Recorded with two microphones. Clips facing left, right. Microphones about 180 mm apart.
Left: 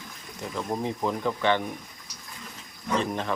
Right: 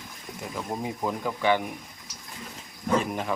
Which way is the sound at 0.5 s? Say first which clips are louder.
Left 3 dB; 10° right (ahead or behind).